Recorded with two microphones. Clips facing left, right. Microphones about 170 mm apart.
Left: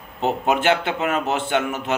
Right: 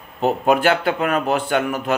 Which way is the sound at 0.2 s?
20° left (ahead or behind).